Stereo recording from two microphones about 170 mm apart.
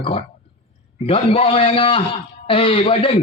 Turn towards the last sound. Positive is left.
turn(degrees=30)  # may be behind; listen again after turning